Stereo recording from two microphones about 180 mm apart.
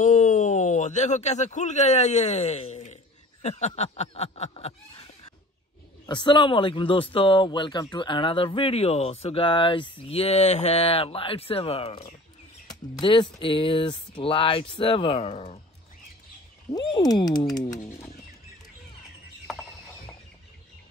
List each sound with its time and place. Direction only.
0.0 s speech: 45° left (ahead or behind)
3.4 s a sound: 40° left (ahead or behind)
6.0 s speech: 25° left (ahead or behind)
16.7 s speech: 20° left (ahead or behind)